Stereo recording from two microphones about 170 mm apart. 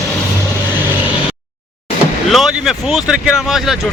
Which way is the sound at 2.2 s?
Centre (ahead or behind).